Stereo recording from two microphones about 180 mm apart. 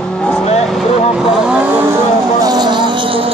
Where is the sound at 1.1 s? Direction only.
5° right (ahead or behind).